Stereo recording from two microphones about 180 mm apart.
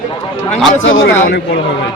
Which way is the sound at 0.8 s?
90° left.